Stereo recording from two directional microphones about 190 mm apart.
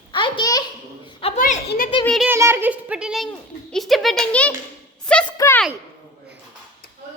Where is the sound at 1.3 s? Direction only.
45° left (ahead or behind).